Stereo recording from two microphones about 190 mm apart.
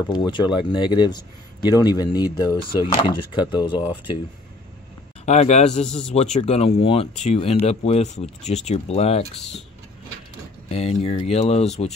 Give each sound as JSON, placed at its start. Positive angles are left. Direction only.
{"t": 0.3, "sound": "a man's voice", "side_deg": 25}
{"t": 5.2, "sound": "speech", "side_deg": 35}
{"t": 5.9, "sound": "a man's voice", "side_deg": 5}
{"t": 6.1, "sound": "speech", "side_deg": 35}
{"t": 10.7, "sound": "speech", "side_deg": 35}